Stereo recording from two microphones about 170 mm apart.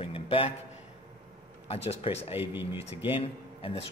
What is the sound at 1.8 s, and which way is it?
Speech, 35° left (ahead or behind).